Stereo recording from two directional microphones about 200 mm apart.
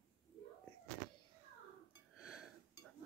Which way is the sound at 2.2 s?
5° right (ahead or behind).